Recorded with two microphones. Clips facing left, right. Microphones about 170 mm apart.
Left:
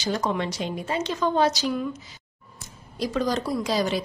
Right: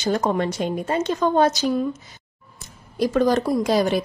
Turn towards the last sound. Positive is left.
turn(degrees=-55)  # may be behind; listen again after turning